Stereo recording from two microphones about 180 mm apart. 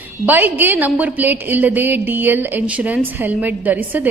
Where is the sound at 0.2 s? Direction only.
10° right (ahead or behind).